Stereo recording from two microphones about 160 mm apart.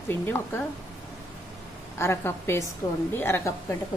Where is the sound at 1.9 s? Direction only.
15° left (ahead or behind).